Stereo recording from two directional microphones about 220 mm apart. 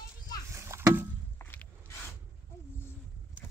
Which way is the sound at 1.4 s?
10° left (ahead or behind).